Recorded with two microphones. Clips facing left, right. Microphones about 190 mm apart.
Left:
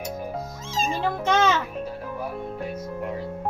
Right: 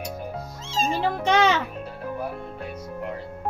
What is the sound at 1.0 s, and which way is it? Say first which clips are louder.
Music: right 1 dB; 15° right (ahead or behind).